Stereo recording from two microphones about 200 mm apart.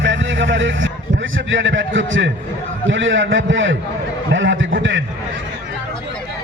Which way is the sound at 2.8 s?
70° right (ahead or behind).